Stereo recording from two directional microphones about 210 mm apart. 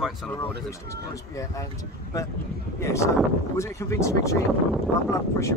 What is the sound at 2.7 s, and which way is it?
Speech, 15° left (ahead or behind).